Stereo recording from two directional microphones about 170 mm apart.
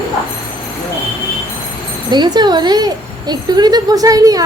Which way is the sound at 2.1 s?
25° right (ahead or behind).